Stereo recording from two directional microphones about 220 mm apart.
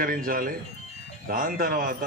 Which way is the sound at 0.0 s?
40° right (ahead or behind).